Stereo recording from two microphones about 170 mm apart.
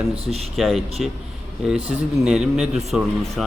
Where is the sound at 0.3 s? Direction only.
35° right (ahead or behind).